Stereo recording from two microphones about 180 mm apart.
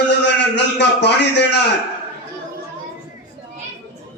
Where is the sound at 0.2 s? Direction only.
75° left (ahead or behind).